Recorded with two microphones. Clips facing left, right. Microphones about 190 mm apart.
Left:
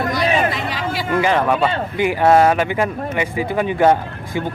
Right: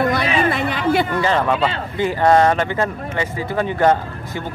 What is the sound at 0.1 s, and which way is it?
Chatter, 55° right (ahead or behind).